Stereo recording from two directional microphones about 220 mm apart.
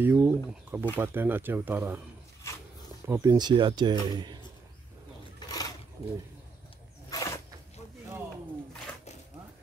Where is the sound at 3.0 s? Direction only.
10° right (ahead or behind).